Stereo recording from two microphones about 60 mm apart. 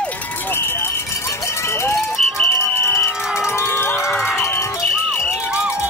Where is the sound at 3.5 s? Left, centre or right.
Left.